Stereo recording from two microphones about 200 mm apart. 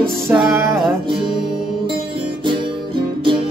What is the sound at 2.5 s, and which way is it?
Music, 25° right (ahead or behind).